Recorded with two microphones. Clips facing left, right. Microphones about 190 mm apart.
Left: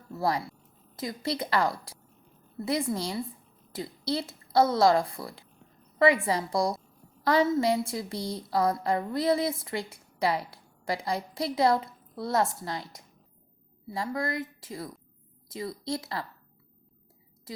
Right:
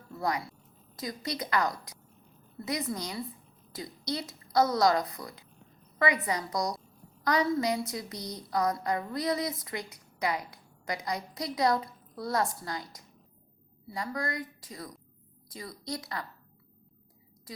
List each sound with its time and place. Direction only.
0.1 s a woman's voice: 30° left (ahead or behind)